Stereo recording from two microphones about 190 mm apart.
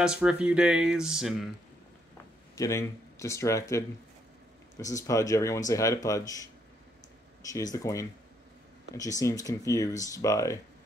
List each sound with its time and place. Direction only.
0.0 s speech: 5° right (ahead or behind)
2.5 s speech: 15° left (ahead or behind)